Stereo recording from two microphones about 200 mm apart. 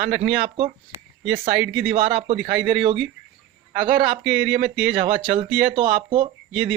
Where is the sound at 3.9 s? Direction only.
25° right (ahead or behind).